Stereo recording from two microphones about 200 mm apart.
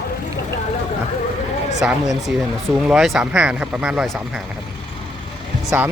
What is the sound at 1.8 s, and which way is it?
Speech, centre (ahead or behind).